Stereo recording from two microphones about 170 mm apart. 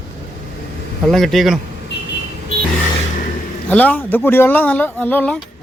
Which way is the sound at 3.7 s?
10° left (ahead or behind).